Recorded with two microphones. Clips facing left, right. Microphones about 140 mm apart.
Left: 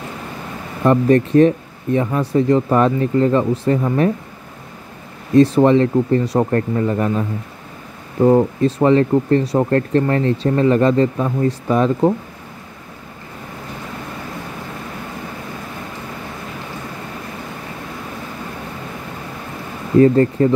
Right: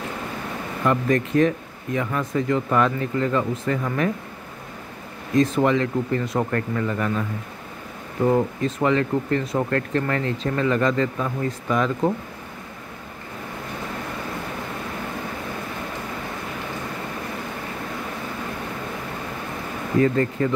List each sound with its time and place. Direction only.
0.8 s speech: 30° left (ahead or behind)
5.6 s speech: 30° left (ahead or behind)
20.0 s speech: 30° left (ahead or behind)